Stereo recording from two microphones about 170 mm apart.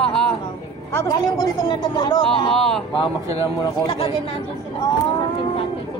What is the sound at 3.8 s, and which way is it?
Speech, 35° left (ahead or behind).